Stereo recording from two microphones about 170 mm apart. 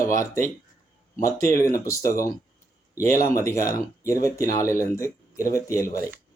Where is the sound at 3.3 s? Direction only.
20° left (ahead or behind).